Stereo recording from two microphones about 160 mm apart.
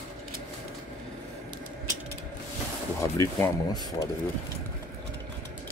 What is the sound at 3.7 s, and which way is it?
Speech, 25° left (ahead or behind).